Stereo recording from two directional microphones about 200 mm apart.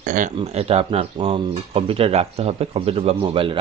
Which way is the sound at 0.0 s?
40° right (ahead or behind).